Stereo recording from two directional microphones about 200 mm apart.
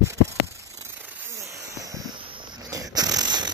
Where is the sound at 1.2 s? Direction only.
15° right (ahead or behind).